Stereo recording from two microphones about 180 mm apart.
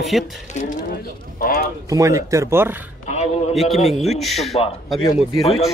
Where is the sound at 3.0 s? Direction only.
35° left (ahead or behind).